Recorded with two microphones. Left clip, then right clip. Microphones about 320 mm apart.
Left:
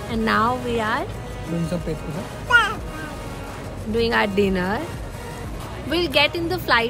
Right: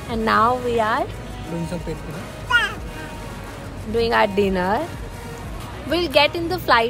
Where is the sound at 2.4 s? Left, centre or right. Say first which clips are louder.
Left 2 dB; left.